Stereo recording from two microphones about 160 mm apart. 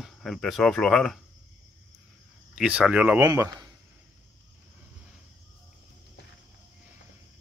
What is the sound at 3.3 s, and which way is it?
Speech, 20° right (ahead or behind).